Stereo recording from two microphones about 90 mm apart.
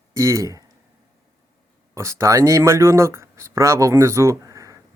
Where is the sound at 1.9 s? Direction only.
35° right (ahead or behind).